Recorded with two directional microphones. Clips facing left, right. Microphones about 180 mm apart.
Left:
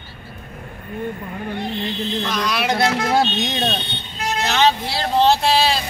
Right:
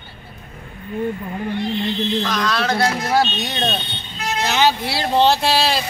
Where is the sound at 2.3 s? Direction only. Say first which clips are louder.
Right 1 dB; 15° left (ahead or behind).